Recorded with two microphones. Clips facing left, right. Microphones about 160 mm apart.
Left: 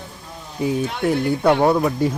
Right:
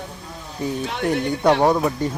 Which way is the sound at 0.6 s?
10° left (ahead or behind).